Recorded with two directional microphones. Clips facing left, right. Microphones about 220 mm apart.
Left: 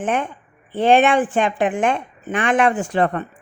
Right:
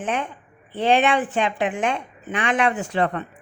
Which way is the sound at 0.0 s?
50° left (ahead or behind).